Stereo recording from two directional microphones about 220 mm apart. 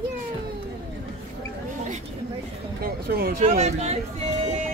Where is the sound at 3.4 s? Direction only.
30° right (ahead or behind).